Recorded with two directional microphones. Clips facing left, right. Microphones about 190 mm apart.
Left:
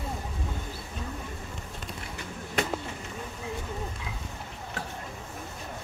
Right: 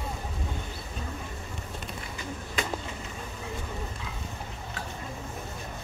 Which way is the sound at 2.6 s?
70° left (ahead or behind).